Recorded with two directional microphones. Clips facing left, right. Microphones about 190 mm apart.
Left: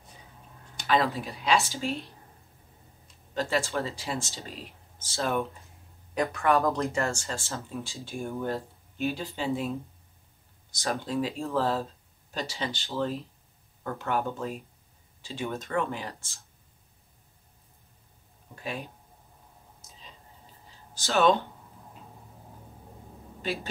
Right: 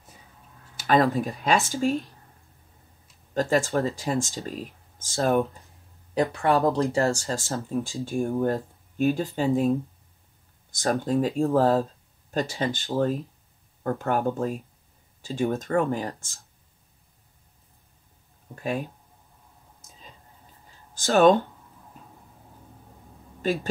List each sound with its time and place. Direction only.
0.8 s speech: 45° right (ahead or behind)
3.3 s speech: 45° right (ahead or behind)
6.1 s speech: 30° right (ahead or behind)
18.5 s speech: 45° right (ahead or behind)
20.9 s speech: 50° right (ahead or behind)
23.4 s speech: 45° right (ahead or behind)